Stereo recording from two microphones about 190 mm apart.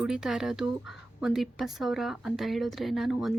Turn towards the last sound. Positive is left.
turn(degrees=0)  # may be behind; listen again after turning